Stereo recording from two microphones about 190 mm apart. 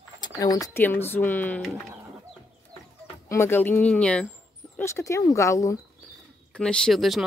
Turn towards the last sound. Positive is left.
turn(degrees=0)  # may be behind; listen again after turning